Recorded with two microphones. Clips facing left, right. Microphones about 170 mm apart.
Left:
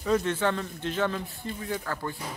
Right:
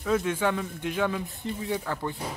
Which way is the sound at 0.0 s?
5° right (ahead or behind).